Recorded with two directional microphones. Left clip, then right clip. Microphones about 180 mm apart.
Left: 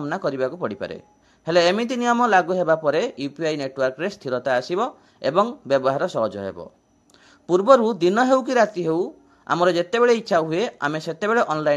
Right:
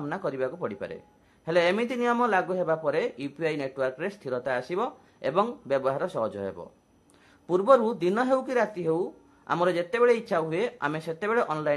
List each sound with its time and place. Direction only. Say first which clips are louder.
0.0 s a man's voice: left 6 dB; 25° left (ahead or behind)